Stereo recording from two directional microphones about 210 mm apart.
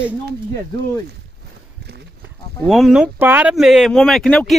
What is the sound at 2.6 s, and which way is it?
Speech, centre (ahead or behind).